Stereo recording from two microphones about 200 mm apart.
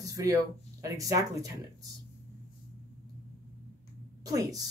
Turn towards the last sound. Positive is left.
turn(degrees=-20)  # may be behind; listen again after turning